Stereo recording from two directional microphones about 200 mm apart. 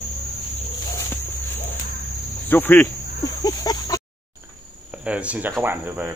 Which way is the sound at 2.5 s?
10° left (ahead or behind).